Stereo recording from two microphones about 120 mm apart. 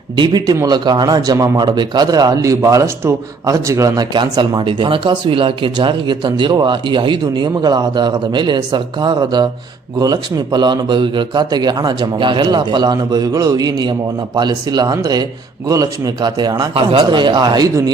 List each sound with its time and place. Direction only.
0.2 s speech: 35° right (ahead or behind)
16.7 s speech: 50° right (ahead or behind)